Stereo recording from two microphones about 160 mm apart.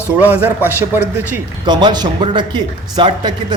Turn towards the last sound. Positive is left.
turn(degrees=-25)  # may be behind; listen again after turning